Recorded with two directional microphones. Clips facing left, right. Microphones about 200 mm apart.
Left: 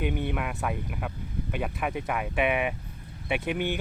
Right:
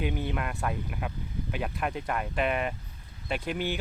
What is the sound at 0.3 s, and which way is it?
Speech, 5° left (ahead or behind).